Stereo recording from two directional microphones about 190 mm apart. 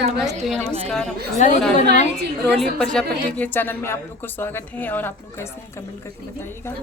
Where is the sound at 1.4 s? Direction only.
40° left (ahead or behind).